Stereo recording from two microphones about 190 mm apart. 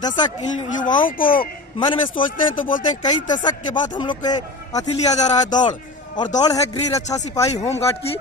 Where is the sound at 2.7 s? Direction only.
45° left (ahead or behind).